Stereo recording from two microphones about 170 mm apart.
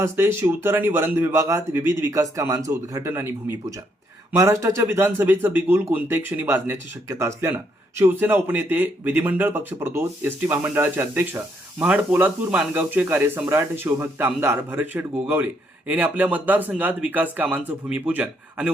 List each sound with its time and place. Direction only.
0.0 s speech: 15° right (ahead or behind)